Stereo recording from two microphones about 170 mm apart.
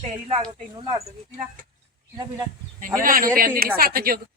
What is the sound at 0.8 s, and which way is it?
Speech, 35° right (ahead or behind).